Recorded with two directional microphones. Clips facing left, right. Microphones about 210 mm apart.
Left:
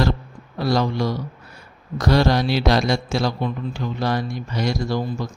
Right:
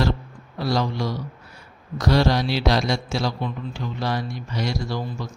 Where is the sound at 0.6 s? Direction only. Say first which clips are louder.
Left 3 dB; 55° left (ahead or behind).